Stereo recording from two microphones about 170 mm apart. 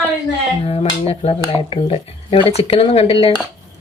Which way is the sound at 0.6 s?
35° left (ahead or behind).